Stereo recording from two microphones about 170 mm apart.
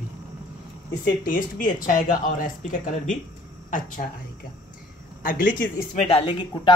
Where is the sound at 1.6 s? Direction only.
50° left (ahead or behind).